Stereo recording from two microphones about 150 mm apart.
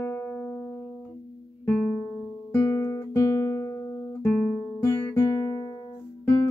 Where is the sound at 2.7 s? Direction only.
20° left (ahead or behind).